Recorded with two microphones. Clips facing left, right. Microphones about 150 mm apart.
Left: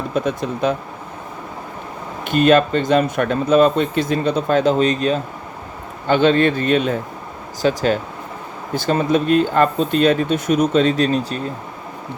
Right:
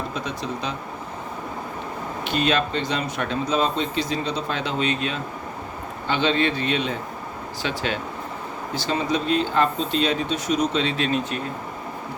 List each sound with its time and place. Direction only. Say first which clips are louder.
0.1 s speech: left 8 dB; 50° left (ahead or behind)
2.2 s speech: left 9 dB; 50° left (ahead or behind)
8.7 s speech: left 7 dB; 50° left (ahead or behind); by 11.3 s 35° left (ahead or behind)